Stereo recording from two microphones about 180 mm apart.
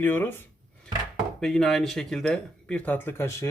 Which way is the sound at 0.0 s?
10° left (ahead or behind).